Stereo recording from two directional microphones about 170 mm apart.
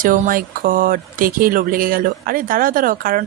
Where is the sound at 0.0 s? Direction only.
55° right (ahead or behind).